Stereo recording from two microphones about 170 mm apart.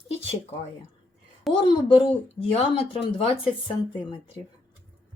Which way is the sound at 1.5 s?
30° left (ahead or behind).